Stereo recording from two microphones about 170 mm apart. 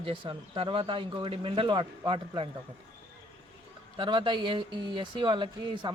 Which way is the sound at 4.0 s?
25° right (ahead or behind).